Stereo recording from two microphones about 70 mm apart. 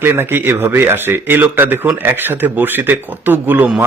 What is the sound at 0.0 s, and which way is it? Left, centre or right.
Speech, right.